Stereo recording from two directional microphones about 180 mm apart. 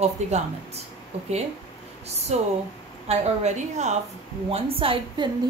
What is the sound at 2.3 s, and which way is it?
Speech, 40° right (ahead or behind).